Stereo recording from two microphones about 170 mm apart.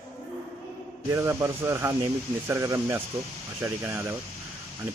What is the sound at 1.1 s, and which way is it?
A man's voice, 15° right (ahead or behind).